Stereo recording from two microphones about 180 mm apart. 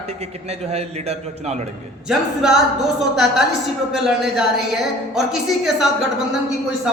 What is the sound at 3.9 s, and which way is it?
Speech, centre (ahead or behind).